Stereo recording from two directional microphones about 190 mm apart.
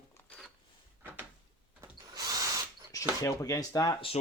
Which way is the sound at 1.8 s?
20° right (ahead or behind).